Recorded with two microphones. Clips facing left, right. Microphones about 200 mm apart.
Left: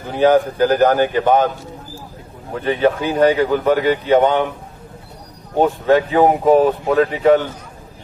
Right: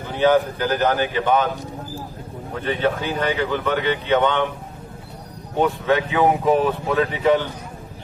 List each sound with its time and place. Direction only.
0.2 s a man's voice: 50° left (ahead or behind)
2.6 s a man's voice: 45° left (ahead or behind)
5.5 s speech: 40° left (ahead or behind)